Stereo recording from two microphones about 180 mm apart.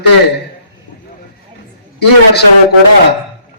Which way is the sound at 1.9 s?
65° left (ahead or behind).